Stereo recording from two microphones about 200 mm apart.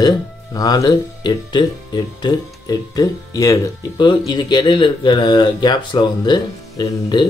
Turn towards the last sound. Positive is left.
turn(degrees=20)  # may be behind; listen again after turning